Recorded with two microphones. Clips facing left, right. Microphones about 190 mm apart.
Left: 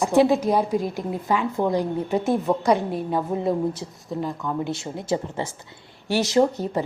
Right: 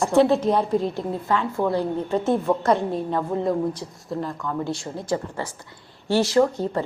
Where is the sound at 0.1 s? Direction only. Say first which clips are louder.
Even; 15° left (ahead or behind).